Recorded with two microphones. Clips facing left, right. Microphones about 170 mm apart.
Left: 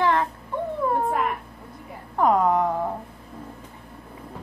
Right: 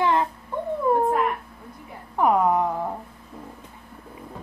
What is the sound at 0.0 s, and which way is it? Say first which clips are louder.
Dog: even; 20° right (ahead or behind).